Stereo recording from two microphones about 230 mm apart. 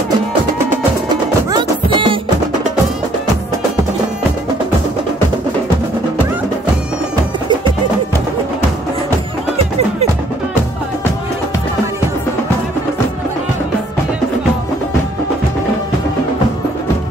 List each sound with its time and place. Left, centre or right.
1.0 s music: centre